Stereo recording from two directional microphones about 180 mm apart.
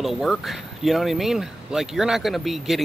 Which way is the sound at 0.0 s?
Centre (ahead or behind).